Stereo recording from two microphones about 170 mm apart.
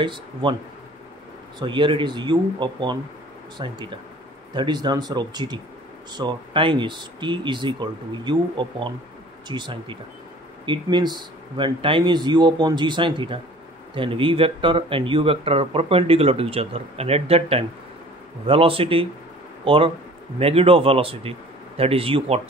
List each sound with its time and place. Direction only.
0.0 s speech: 30° right (ahead or behind)
1.6 s speech: 30° right (ahead or behind)